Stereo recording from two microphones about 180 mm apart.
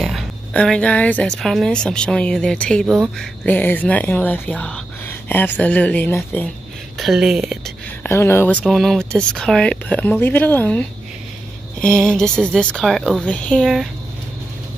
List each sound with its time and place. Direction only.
0.0 s speech: centre (ahead or behind)
7.0 s speech: centre (ahead or behind)
8.0 s speech: 15° left (ahead or behind)
8.6 s speech: centre (ahead or behind)